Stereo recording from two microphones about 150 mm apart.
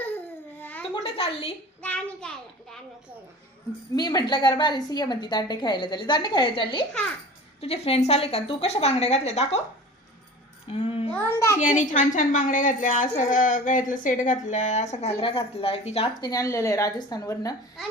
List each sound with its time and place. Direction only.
0.6 s a sound: 10° left (ahead or behind)
1.0 s speech: 40° left (ahead or behind)
1.8 s a child's voice: 10° left (ahead or behind)
3.9 s a woman's voice: 25° left (ahead or behind); by 9.6 s 45° left (ahead or behind)
10.7 s a sound: 40° left (ahead or behind)
11.1 s a child's voice: 15° left (ahead or behind)
11.6 s a woman's voice: 55° left (ahead or behind)
15.2 s speech: 40° left (ahead or behind)
16.2 s a woman's voice: 25° left (ahead or behind)